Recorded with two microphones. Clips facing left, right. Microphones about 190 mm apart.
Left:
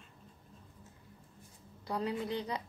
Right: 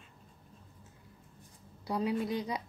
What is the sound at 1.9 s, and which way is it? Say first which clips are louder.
Speech: right 3 dB; 10° right (ahead or behind).